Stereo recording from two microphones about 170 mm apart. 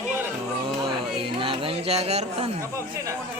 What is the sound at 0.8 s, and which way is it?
Speech, 30° right (ahead or behind).